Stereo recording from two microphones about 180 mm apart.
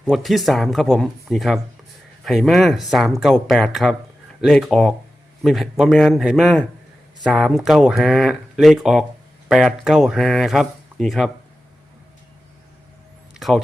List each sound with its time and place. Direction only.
0.0 s speech: centre (ahead or behind)
13.3 s vehicle: centre (ahead or behind)